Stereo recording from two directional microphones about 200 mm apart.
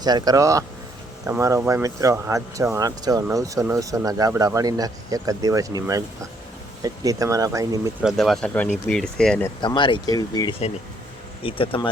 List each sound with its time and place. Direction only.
0.0 s speech: 20° right (ahead or behind)
8.0 s speech: centre (ahead or behind)
9.6 s speech: 25° left (ahead or behind)